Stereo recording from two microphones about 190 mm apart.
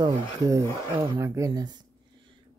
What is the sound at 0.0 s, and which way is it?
Speech, 15° right (ahead or behind).